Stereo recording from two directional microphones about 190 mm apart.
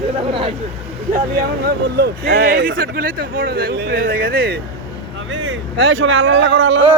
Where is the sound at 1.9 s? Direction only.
60° right (ahead or behind).